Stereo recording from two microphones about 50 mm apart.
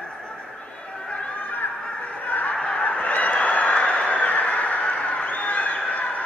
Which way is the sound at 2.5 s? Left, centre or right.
Left.